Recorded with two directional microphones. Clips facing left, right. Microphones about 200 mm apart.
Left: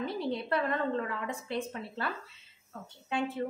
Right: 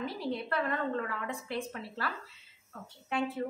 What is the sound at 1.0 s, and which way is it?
Speech, 20° left (ahead or behind).